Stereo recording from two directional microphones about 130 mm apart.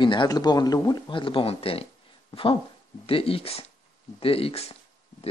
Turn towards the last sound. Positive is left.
turn(degrees=50)  # may be behind; listen again after turning